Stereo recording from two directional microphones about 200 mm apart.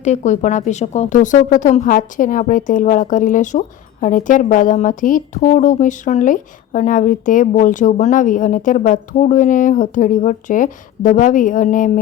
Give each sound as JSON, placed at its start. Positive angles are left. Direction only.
{"t": 0.0, "sound": "speech", "side_deg": 35}